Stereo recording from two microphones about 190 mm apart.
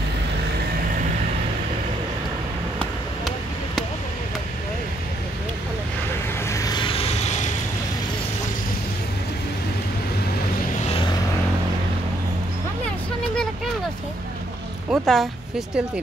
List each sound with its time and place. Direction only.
6.4 s vehicle: 15° left (ahead or behind); by 7.3 s 35° left (ahead or behind)
10.9 s vehicle: 25° left (ahead or behind)
14.9 s a sound: centre (ahead or behind)